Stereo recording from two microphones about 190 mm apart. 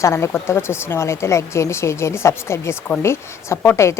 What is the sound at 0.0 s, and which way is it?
Speech, 15° left (ahead or behind).